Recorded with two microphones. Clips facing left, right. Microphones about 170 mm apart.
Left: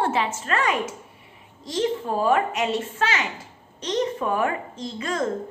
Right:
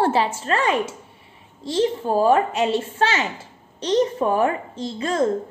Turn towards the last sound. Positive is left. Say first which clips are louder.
# right 5 dB
turn(degrees=-30)  # may be behind; listen again after turning